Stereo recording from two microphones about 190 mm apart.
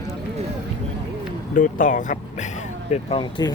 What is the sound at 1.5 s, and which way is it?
Speech, 45° left (ahead or behind).